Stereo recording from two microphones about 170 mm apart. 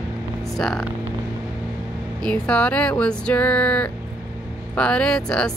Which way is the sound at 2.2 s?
5° left (ahead or behind).